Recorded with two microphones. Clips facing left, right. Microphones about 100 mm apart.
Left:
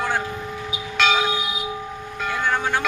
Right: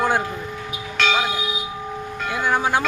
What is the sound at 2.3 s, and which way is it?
Vehicle, 15° right (ahead or behind).